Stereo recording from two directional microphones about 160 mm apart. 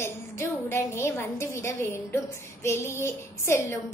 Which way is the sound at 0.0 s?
15° left (ahead or behind).